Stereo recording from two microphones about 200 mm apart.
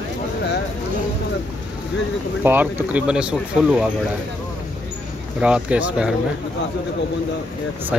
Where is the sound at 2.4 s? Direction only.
10° right (ahead or behind).